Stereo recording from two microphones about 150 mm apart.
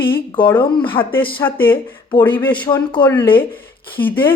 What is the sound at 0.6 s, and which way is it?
Speech, 30° left (ahead or behind).